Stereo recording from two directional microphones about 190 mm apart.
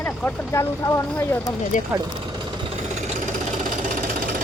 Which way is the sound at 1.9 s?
20° right (ahead or behind).